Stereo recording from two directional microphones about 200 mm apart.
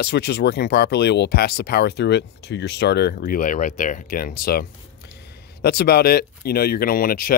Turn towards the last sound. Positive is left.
turn(degrees=45)  # may be behind; listen again after turning